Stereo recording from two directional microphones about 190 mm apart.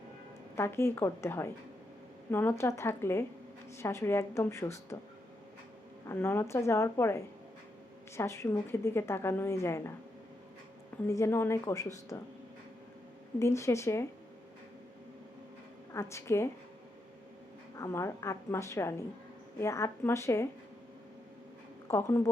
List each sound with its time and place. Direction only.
0.5 s a woman's voice: 15° left (ahead or behind)
6.1 s a woman's voice: 15° left (ahead or behind)
10.9 s a woman's voice: 15° left (ahead or behind)
13.4 s a woman's voice: 15° left (ahead or behind)
15.9 s a woman's voice: 15° left (ahead or behind)
17.7 s a woman's voice: 15° left (ahead or behind)
21.8 s a woman's voice: 15° left (ahead or behind)